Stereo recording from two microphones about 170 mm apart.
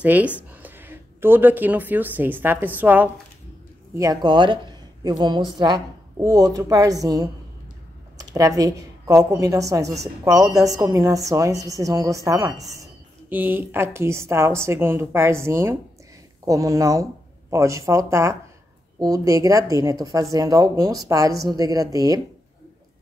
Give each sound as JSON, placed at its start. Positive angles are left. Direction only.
{"t": 0.0, "sound": "a woman's voice", "side_deg": -10}